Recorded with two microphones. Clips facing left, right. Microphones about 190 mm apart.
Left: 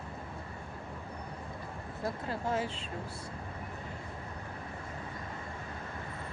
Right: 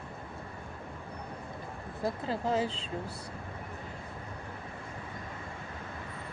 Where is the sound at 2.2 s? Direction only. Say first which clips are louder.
Right 3 dB; 35° right (ahead or behind).